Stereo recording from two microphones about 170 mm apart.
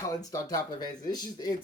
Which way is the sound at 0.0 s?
20° left (ahead or behind).